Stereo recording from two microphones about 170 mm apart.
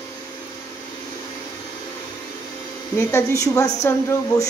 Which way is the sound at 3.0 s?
15° left (ahead or behind).